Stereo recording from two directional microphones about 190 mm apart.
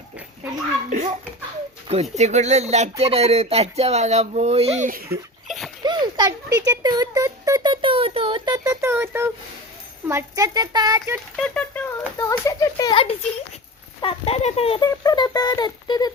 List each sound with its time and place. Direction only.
0.9 s a child's voice: 40° right (ahead or behind)
5.5 s a sound: centre (ahead or behind)
5.8 s a sound: 20° right (ahead or behind)
10.1 s speech: 15° right (ahead or behind)
11.3 s patter: 5° left (ahead or behind)
12.3 s speech: 20° left (ahead or behind)
15.0 s speech: 20° left (ahead or behind)